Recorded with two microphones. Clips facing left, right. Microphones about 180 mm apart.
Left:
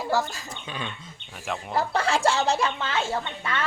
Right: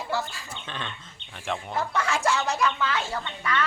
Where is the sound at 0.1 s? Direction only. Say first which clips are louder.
Left 5 dB; 45° left (ahead or behind).